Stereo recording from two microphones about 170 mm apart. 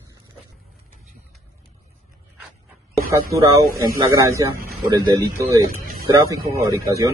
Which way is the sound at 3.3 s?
20° right (ahead or behind).